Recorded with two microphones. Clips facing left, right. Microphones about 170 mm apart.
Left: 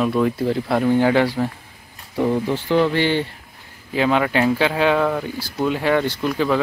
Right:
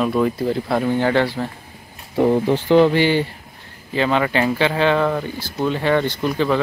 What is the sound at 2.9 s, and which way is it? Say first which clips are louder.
Speech: right 2 dB; 10° right (ahead or behind).